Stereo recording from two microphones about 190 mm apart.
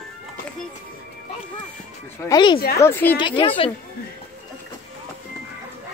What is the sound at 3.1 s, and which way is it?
Speech, 25° left (ahead or behind).